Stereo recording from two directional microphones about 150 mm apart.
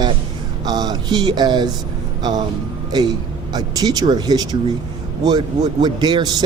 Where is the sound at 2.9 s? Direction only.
25° right (ahead or behind).